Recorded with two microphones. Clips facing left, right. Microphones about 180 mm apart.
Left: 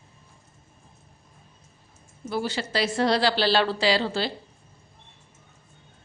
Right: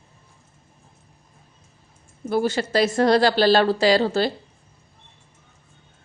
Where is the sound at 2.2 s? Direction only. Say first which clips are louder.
Right 7 dB; 50° right (ahead or behind).